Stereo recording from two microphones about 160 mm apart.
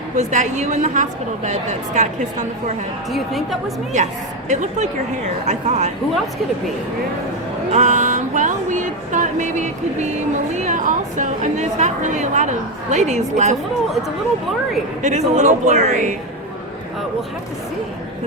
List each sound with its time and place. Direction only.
0.2 s a woman's voice: 50° right (ahead or behind)
3.1 s a woman's voice: centre (ahead or behind)
3.9 s a woman's voice: 50° right (ahead or behind)
7.7 s a woman's voice: 50° right (ahead or behind)
15.0 s a woman's voice: 50° right (ahead or behind)